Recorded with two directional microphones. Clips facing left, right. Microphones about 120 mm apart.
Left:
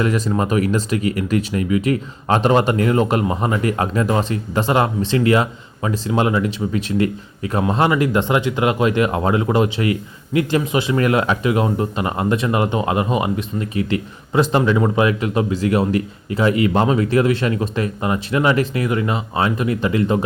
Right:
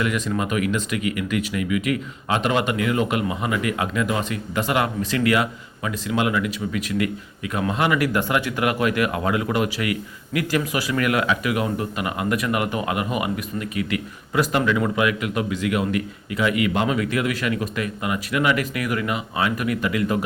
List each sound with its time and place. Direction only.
0.0 s speech: 35° left (ahead or behind)